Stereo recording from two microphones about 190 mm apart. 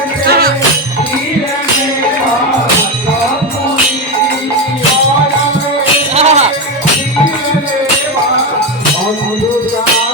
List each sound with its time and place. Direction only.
0.3 s music: 50° right (ahead or behind)
6.1 s music: 35° right (ahead or behind)